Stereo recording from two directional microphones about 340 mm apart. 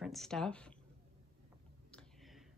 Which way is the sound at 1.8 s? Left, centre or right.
Centre.